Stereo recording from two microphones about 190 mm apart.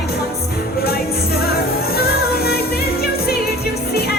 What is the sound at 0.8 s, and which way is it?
Music, 55° left (ahead or behind).